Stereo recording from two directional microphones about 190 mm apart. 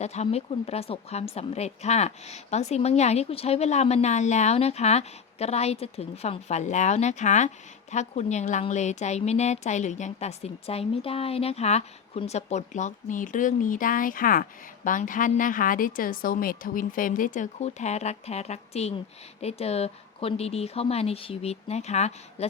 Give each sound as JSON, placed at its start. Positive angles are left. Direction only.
{"t": 0.0, "sound": "a woman's voice", "side_deg": 35}